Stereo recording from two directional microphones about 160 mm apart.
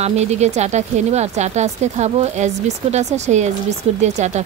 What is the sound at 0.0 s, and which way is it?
Speech, 45° right (ahead or behind).